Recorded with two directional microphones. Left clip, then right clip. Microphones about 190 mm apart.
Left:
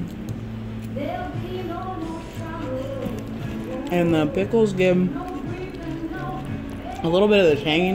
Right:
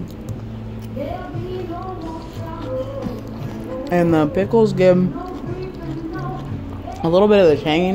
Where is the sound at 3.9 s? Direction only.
10° right (ahead or behind).